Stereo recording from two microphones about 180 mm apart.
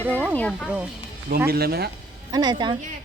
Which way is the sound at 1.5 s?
60° right (ahead or behind).